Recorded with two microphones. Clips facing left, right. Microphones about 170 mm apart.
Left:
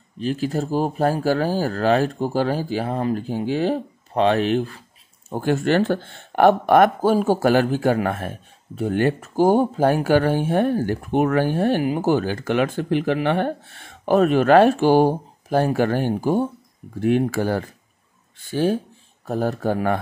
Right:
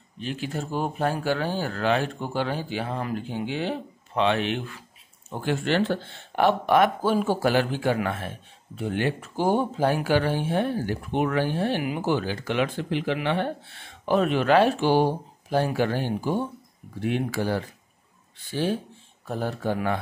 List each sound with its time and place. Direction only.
0.2 s speech: 40° left (ahead or behind)